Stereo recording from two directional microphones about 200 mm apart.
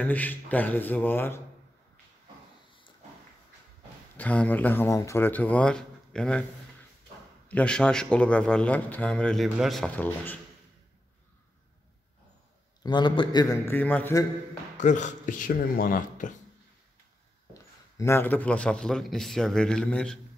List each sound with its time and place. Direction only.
0.0 s speech: 10° left (ahead or behind)
4.2 s speech: 5° left (ahead or behind)
7.4 s speech: 5° left (ahead or behind)
12.8 s speech: 25° left (ahead or behind)
14.8 s speech: 35° left (ahead or behind)
17.6 s speech: 15° left (ahead or behind)